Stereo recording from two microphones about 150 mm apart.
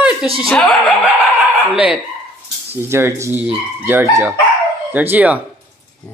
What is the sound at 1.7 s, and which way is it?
Speech, 5° right (ahead or behind).